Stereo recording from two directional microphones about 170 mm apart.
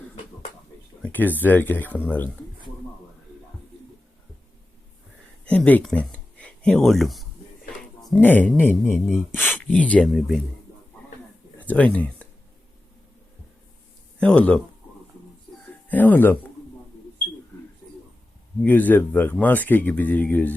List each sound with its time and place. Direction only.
1.0 s speech: 10° left (ahead or behind)
5.5 s speech: 10° left (ahead or behind)
11.6 s speech: 10° left (ahead or behind)
14.2 s speech: 5° left (ahead or behind)
15.9 s speech: 10° left (ahead or behind)
18.6 s speech: 10° left (ahead or behind)